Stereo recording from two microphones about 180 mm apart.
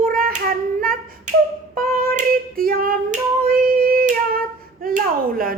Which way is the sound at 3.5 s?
55° right (ahead or behind).